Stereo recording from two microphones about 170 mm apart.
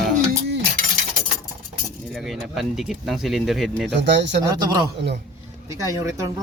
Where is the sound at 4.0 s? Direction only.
90° right.